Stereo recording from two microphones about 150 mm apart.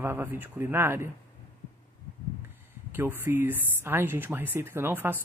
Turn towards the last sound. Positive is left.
turn(degrees=-15)  # may be behind; listen again after turning